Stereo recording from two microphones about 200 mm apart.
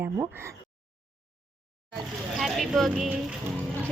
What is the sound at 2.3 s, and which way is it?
Speech, centre (ahead or behind).